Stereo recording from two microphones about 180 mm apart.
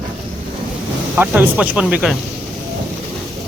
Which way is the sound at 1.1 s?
10° right (ahead or behind).